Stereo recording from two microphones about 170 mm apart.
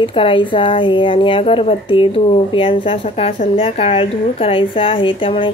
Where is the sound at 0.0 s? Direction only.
30° left (ahead or behind).